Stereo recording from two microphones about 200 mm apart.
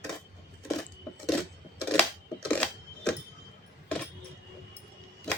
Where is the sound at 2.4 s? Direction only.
5° left (ahead or behind).